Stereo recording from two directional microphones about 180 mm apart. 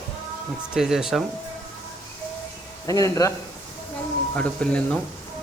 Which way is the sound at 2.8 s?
20° left (ahead or behind).